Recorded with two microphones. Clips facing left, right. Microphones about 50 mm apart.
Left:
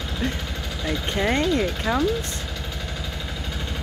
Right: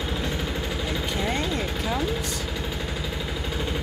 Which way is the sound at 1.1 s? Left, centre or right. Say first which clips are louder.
Left 8 dB; left.